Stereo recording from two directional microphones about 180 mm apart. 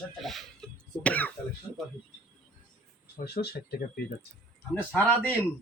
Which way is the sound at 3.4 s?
55° left (ahead or behind).